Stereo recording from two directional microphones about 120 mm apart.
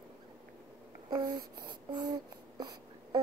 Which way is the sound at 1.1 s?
35° right (ahead or behind).